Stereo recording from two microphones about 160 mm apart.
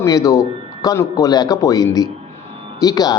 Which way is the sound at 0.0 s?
20° left (ahead or behind).